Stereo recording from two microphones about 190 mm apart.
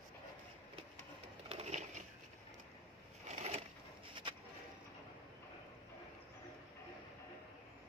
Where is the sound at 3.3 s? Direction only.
35° right (ahead or behind).